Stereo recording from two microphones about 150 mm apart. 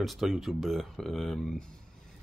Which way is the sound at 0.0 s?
Centre (ahead or behind).